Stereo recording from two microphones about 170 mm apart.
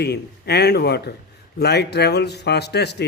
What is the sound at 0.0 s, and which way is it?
A man's voice, 75° left (ahead or behind).